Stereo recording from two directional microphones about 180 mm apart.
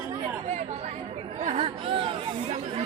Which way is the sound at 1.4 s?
35° right (ahead or behind).